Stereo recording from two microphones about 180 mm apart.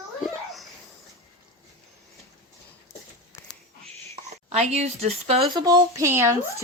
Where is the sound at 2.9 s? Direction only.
15° left (ahead or behind).